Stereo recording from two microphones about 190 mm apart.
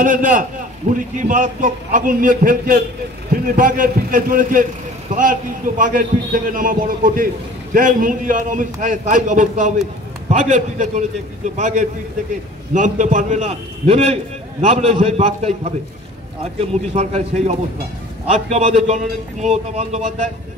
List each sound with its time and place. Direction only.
0.0 s a man's voice: 45° right (ahead or behind)
5.8 s a man's voice: 45° right (ahead or behind)
16.9 s a man's voice: 35° right (ahead or behind)